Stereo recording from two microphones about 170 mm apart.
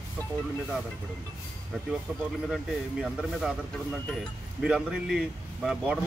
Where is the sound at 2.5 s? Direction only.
Centre (ahead or behind).